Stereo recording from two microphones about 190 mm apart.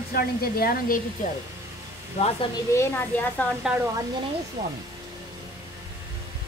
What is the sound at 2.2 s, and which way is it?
Speech, 35° left (ahead or behind).